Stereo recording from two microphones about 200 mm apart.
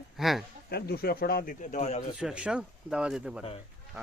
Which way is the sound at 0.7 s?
50° left (ahead or behind).